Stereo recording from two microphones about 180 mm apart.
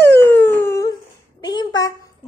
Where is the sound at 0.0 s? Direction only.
15° left (ahead or behind).